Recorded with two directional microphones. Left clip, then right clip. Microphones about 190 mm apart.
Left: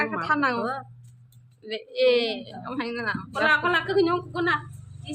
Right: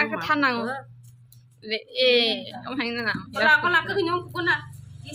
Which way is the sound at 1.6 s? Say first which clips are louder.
Even; 10° right (ahead or behind).